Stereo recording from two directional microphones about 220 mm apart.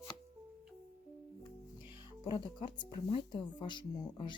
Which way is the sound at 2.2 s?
20° left (ahead or behind).